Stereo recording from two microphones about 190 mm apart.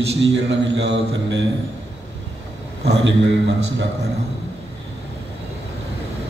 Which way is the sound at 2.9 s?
70° right (ahead or behind).